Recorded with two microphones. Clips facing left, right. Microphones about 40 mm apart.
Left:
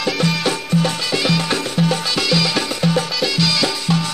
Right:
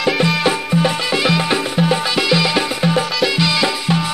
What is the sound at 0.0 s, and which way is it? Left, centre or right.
Music, centre.